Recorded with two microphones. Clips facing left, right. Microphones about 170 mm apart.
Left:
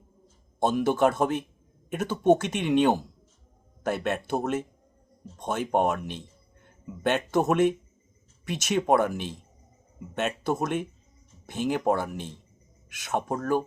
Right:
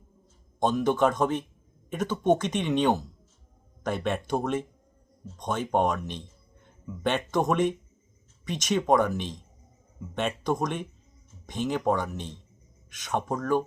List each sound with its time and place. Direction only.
0.6 s speech: 10° left (ahead or behind)